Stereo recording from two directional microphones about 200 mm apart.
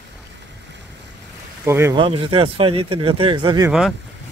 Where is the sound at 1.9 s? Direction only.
25° right (ahead or behind).